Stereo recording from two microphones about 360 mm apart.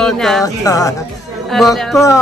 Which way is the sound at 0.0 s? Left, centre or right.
Centre.